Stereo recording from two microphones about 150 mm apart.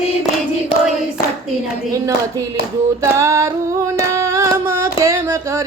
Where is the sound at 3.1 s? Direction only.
20° right (ahead or behind).